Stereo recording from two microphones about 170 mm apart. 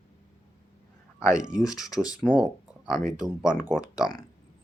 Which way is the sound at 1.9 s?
20° left (ahead or behind).